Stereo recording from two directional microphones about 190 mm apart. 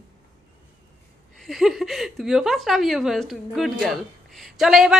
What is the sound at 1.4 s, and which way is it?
A woman's voice, centre (ahead or behind).